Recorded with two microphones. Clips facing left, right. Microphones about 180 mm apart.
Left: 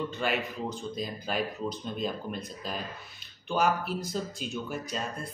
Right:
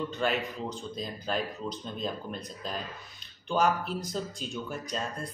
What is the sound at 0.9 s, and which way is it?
Speech, 5° left (ahead or behind).